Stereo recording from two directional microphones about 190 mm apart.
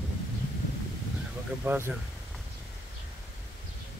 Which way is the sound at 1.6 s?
10° right (ahead or behind).